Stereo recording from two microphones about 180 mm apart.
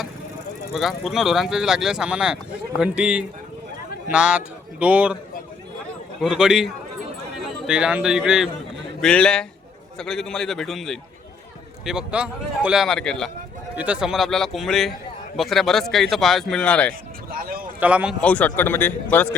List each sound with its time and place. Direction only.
0.7 s speech: centre (ahead or behind)
6.1 s speech: 5° right (ahead or behind)
7.7 s speech: 5° right (ahead or behind)
17.3 s a sound: 50° right (ahead or behind)
17.7 s speech: 5° right (ahead or behind)
18.2 s a man's voice: 10° left (ahead or behind)